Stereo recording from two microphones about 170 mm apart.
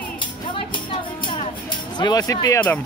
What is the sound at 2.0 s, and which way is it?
Speech, 25° left (ahead or behind).